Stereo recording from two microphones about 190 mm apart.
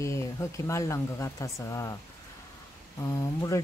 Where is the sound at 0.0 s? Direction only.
15° left (ahead or behind).